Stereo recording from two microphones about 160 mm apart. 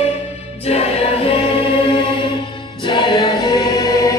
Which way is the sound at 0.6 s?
40° left (ahead or behind).